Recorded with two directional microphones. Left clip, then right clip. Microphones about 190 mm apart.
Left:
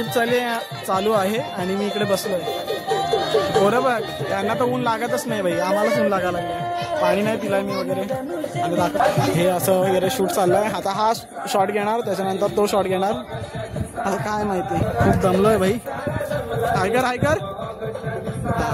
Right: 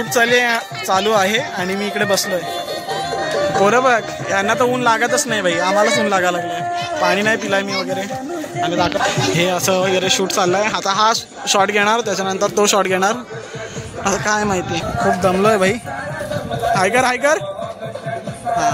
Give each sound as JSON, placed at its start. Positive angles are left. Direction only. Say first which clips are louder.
{"t": 0.1, "sound": "speech", "louder": "right 7 dB", "side_deg": 0}
{"t": 3.2, "sound": "music", "louder": "right 3 dB", "side_deg": 65}
{"t": 3.6, "sound": "speech", "louder": "right 5 dB", "side_deg": -15}
{"t": 9.4, "sound": "speech", "louder": "right 2 dB", "side_deg": 5}
{"t": 16.7, "sound": "speech", "louder": "right 6 dB", "side_deg": -20}